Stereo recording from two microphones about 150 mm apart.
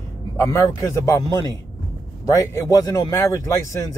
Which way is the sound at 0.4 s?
20° left (ahead or behind).